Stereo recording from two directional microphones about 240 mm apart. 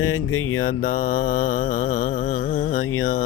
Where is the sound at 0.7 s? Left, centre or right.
Left.